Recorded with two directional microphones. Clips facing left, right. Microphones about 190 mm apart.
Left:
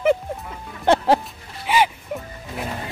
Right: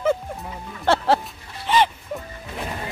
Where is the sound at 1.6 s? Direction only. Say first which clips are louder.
Even; 10° left (ahead or behind).